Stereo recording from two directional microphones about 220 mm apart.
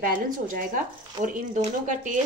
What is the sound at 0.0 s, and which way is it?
Speech, 40° right (ahead or behind).